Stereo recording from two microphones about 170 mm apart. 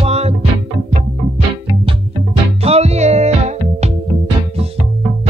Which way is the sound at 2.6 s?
40° right (ahead or behind).